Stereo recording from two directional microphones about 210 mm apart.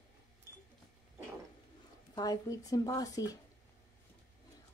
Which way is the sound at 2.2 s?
20° left (ahead or behind).